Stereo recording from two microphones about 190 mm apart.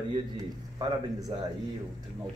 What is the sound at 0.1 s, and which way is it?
A man's voice, 20° right (ahead or behind).